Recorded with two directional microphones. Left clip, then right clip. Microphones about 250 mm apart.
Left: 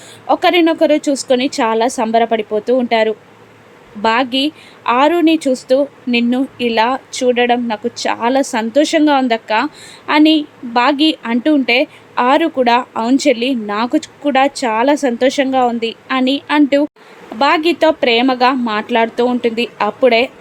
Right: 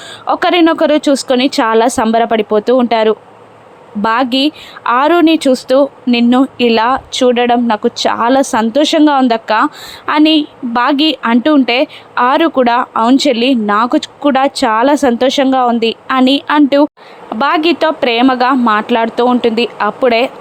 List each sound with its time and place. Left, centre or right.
0.3 s speech: centre